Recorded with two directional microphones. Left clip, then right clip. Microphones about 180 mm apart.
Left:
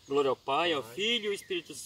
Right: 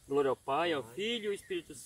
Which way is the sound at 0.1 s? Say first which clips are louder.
Left 3 dB; 5° left (ahead or behind).